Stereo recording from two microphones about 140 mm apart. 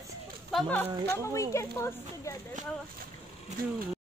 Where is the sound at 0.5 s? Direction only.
10° left (ahead or behind).